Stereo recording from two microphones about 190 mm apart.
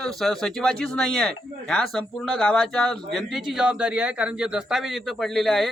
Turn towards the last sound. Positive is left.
turn(degrees=0)  # may be behind; listen again after turning